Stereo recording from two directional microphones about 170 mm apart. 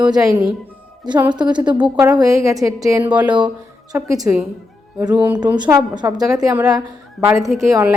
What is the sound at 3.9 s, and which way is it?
A woman's voice, 20° right (ahead or behind).